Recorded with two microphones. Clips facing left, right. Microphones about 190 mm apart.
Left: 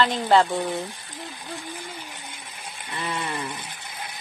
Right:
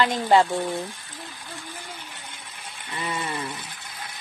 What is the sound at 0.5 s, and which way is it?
Speech, 15° left (ahead or behind).